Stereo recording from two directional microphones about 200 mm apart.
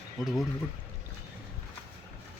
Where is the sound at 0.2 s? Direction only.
Centre (ahead or behind).